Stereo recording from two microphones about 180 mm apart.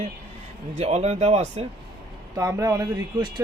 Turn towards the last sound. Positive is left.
turn(degrees=-20)  # may be behind; listen again after turning